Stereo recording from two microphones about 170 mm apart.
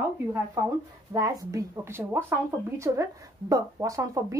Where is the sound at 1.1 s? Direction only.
20° right (ahead or behind).